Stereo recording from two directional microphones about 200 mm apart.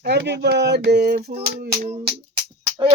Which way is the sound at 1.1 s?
30° right (ahead or behind).